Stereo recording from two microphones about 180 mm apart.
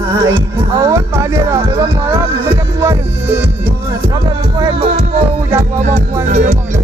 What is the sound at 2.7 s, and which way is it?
Music, 15° right (ahead or behind).